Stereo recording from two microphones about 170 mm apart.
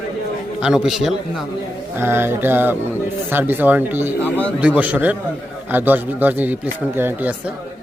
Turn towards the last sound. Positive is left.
turn(degrees=-10)  # may be behind; listen again after turning